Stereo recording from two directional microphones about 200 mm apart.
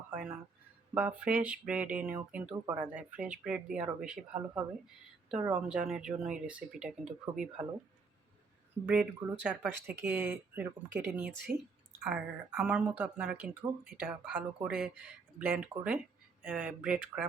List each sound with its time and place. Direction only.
0.1 s speech: 5° right (ahead or behind)
8.9 s speech: 10° right (ahead or behind)
11.3 s speech: 55° right (ahead or behind)
12.0 s speech: 5° right (ahead or behind)